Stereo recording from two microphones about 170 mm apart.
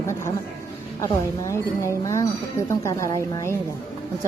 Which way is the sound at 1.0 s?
15° left (ahead or behind).